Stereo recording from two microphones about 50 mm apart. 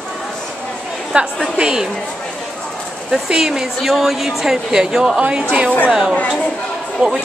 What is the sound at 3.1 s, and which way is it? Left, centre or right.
Speech, centre.